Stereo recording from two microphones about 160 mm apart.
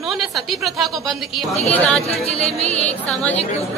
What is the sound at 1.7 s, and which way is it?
Speech, 5° left (ahead or behind).